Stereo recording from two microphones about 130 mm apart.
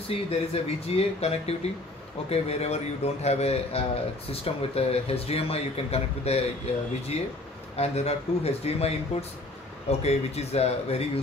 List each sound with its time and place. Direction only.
0.1 s speech: 50° left (ahead or behind)